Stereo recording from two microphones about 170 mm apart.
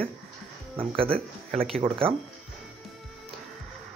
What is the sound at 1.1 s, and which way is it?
Speech, 5° left (ahead or behind).